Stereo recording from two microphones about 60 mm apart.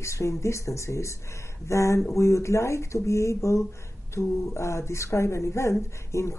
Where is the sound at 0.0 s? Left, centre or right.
Left.